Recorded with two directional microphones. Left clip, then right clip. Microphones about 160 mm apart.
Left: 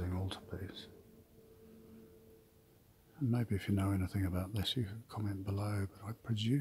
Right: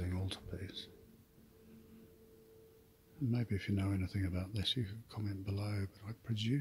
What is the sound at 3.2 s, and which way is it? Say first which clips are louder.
Speech: left 2 dB; 5° left (ahead or behind).